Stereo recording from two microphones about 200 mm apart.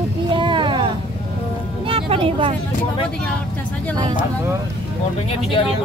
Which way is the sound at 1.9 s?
25° right (ahead or behind).